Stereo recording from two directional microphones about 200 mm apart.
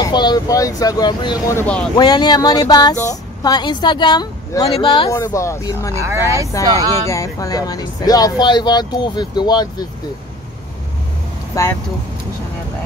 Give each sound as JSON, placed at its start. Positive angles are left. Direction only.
{"t": 0.0, "sound": "speech", "side_deg": 20}
{"t": 1.5, "sound": "speech", "side_deg": 10}
{"t": 2.0, "sound": "speech", "side_deg": 20}
{"t": 5.9, "sound": "speech", "side_deg": -15}
{"t": 7.1, "sound": "speech", "side_deg": 15}
{"t": 11.6, "sound": "speech", "side_deg": 15}